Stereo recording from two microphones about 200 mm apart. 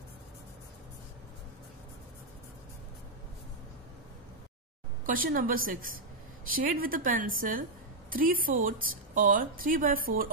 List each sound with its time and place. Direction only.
5.0 s speech: 45° right (ahead or behind)